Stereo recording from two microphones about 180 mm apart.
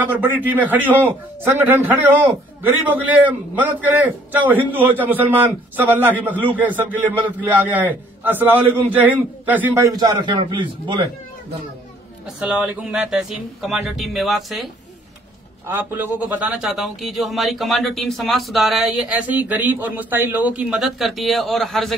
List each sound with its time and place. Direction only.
0.2 s a man's voice: 10° right (ahead or behind)
9.9 s a man's voice: 25° right (ahead or behind)
12.4 s a man's voice: 5° right (ahead or behind)
15.6 s a man's voice: 10° right (ahead or behind)